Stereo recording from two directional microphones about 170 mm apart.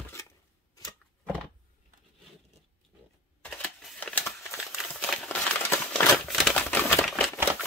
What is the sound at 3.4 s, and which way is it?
Crumpling, 5° left (ahead or behind).